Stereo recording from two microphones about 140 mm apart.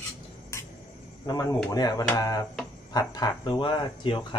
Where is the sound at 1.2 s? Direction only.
25° left (ahead or behind).